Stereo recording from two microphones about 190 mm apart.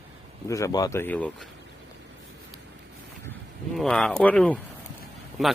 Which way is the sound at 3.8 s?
5° left (ahead or behind).